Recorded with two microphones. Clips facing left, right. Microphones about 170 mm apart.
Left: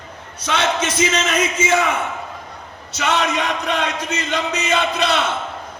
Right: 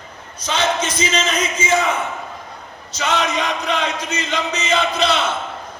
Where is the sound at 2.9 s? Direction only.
60° left (ahead or behind).